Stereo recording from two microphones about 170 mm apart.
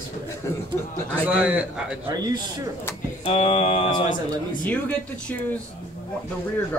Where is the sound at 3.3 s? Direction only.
35° left (ahead or behind).